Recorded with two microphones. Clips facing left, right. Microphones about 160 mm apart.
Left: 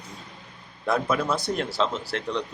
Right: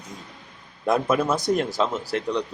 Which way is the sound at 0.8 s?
20° right (ahead or behind).